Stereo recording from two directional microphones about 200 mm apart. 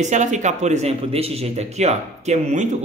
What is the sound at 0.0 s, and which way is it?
Speech, 35° right (ahead or behind).